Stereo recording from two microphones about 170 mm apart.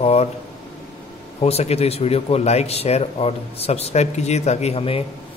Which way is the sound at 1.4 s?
40° left (ahead or behind).